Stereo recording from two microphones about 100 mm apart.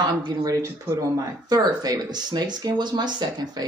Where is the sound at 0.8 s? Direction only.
35° right (ahead or behind).